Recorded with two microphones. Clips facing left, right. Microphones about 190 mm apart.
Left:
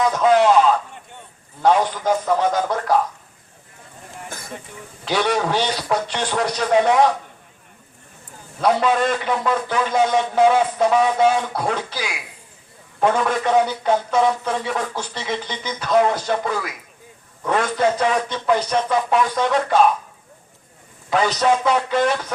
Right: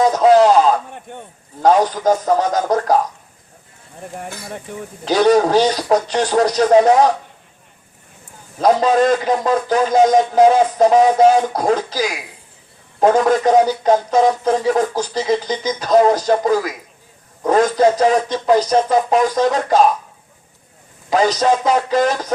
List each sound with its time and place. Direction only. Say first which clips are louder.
0.0 s a sound: right 5 dB; 35° right (ahead or behind)
1.6 s speech: right 4 dB; 40° right (ahead or behind)
5.0 s speech: right 8 dB; 40° right (ahead or behind)
8.6 s speech: right 5 dB; 40° right (ahead or behind)
21.1 s speech: right 3 dB; 40° right (ahead or behind)